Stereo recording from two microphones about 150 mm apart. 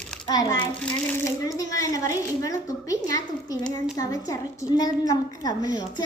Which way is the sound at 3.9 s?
20° left (ahead or behind).